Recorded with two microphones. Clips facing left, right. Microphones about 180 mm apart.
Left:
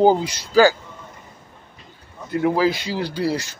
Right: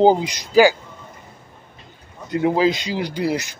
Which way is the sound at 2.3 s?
20° right (ahead or behind).